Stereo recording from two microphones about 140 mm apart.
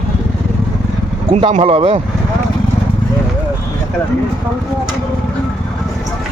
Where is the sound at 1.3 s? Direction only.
50° right (ahead or behind).